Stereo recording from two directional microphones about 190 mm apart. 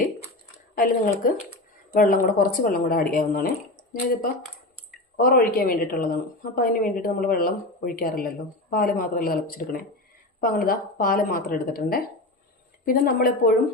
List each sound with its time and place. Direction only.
0.8 s a woman's voice: 45° left (ahead or behind)
5.1 s a woman's voice: 50° left (ahead or behind)